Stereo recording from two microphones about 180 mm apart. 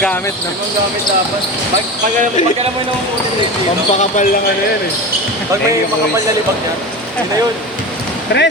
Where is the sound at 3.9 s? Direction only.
40° left (ahead or behind).